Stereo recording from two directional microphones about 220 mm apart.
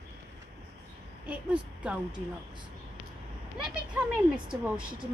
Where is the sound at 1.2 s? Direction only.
5° right (ahead or behind).